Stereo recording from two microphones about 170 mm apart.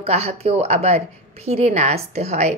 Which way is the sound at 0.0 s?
40° right (ahead or behind).